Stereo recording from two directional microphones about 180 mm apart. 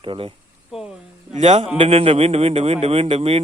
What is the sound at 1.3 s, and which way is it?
Speech, 35° right (ahead or behind).